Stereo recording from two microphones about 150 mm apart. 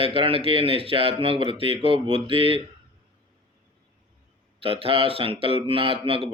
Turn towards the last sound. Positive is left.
turn(degrees=-35)  # may be behind; listen again after turning